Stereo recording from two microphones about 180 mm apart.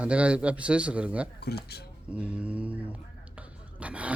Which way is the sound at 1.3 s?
60° left (ahead or behind).